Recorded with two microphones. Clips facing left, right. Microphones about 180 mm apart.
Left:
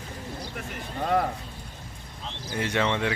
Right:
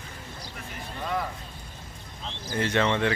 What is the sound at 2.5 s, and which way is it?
Speech, 10° left (ahead or behind).